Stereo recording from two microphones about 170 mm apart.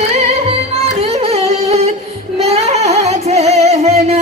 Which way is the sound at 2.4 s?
40° right (ahead or behind).